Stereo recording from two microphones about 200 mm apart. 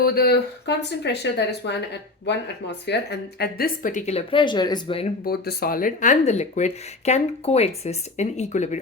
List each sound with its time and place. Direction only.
0.0 s speech: 50° left (ahead or behind); by 5.0 s 25° left (ahead or behind)
5.2 s speech: 50° left (ahead or behind)